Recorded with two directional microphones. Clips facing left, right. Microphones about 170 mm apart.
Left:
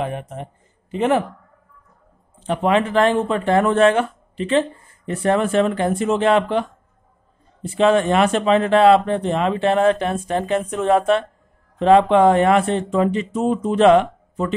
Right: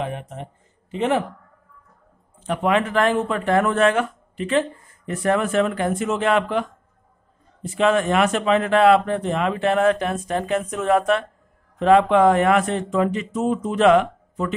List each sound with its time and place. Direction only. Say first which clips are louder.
0.9 s speech: left 3 dB; 50° left (ahead or behind)
2.4 s speech: left 2 dB; 30° left (ahead or behind)
7.7 s speech: left 3 dB; 30° left (ahead or behind)